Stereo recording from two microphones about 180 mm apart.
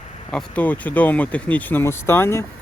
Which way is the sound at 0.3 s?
5° left (ahead or behind).